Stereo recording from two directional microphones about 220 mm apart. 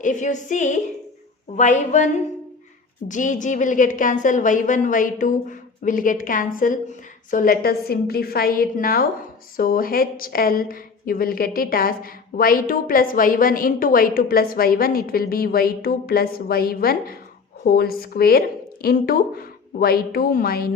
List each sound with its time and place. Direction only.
0.0 s a woman's voice: 35° left (ahead or behind)